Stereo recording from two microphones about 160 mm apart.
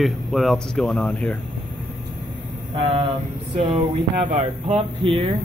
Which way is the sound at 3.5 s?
35° right (ahead or behind).